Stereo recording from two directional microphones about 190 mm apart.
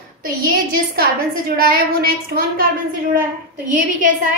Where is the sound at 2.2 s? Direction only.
50° right (ahead or behind).